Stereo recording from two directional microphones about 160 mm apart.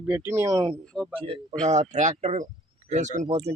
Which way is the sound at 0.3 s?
20° right (ahead or behind).